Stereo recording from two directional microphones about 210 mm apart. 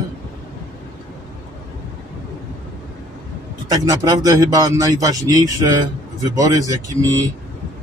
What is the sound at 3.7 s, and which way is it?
A man's voice, 15° right (ahead or behind).